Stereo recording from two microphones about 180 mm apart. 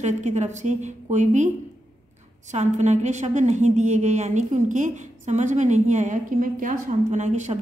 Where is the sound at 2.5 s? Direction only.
40° right (ahead or behind).